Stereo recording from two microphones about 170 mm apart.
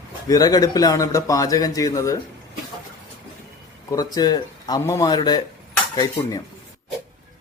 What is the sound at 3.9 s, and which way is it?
A man's voice, 20° left (ahead or behind).